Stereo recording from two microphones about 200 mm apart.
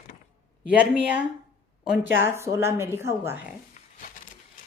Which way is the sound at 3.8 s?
35° left (ahead or behind).